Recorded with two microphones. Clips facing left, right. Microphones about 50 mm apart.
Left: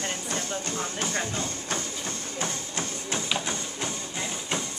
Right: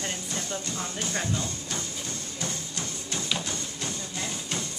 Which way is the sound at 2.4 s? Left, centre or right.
Left.